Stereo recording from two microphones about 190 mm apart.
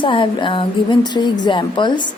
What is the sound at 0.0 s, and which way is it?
A woman's voice, 25° left (ahead or behind).